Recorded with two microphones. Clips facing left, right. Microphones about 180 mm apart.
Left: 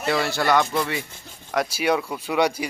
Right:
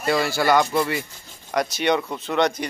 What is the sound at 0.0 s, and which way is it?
Speech, centre (ahead or behind).